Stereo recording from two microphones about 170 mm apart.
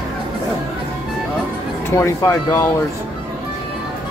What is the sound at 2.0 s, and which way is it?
Speech, 15° left (ahead or behind).